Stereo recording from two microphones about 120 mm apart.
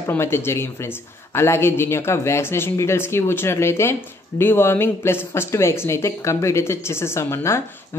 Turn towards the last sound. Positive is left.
turn(degrees=20)  # may be behind; listen again after turning